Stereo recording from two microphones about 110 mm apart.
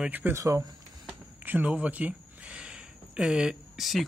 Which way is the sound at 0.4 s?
30° right (ahead or behind).